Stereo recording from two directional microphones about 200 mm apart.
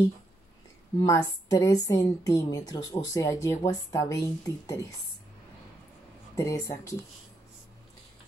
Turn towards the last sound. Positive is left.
turn(degrees=15)  # may be behind; listen again after turning